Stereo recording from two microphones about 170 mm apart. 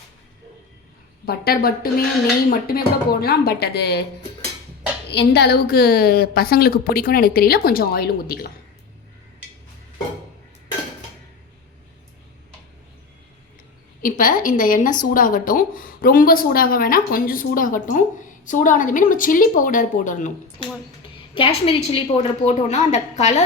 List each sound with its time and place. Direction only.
1.2 s a woman's voice: 65° left (ahead or behind)
5.1 s a woman's voice: 75° left (ahead or behind)
14.0 s a woman's voice: 55° left (ahead or behind)
21.3 s a woman's voice: 35° left (ahead or behind)